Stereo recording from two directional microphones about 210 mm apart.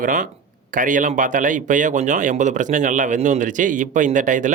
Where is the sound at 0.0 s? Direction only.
40° right (ahead or behind).